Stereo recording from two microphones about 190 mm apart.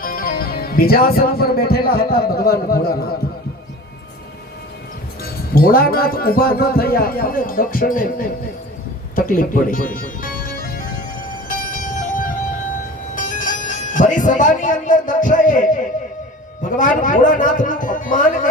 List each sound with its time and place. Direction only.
0.0 s speech: 50° left (ahead or behind)
5.2 s speech: 50° left (ahead or behind)
9.1 s music: 45° left (ahead or behind)
11.4 s a sound: 45° left (ahead or behind)
13.1 s speech: 45° left (ahead or behind)